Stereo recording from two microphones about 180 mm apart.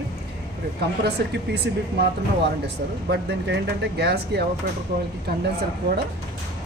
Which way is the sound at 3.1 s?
65° right (ahead or behind).